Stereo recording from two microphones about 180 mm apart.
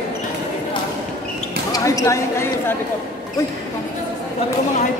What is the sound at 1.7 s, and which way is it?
Speech, 20° left (ahead or behind).